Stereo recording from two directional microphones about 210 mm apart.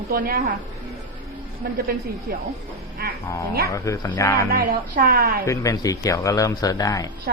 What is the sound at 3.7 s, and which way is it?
Speech, 15° left (ahead or behind).